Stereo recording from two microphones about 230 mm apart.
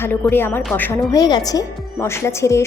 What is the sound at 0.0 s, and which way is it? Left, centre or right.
A woman's voice, centre.